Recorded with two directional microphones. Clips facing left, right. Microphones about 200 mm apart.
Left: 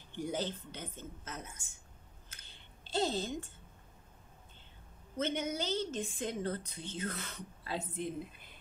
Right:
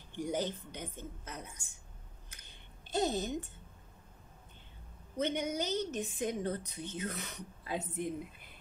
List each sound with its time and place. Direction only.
0.2 s speech: 15° right (ahead or behind)
2.8 s a woman's voice: 20° right (ahead or behind)
5.1 s speech: 15° right (ahead or behind)